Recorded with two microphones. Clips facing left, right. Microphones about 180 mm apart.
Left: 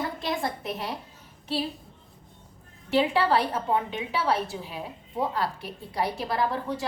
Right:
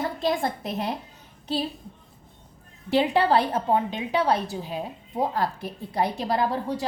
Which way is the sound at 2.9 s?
35° right (ahead or behind).